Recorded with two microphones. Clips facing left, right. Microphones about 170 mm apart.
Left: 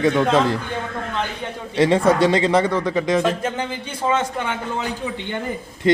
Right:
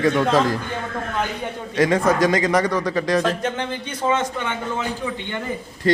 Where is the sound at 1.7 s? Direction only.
30° left (ahead or behind).